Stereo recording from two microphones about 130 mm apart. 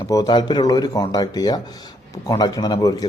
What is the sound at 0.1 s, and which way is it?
A man's voice, 30° left (ahead or behind).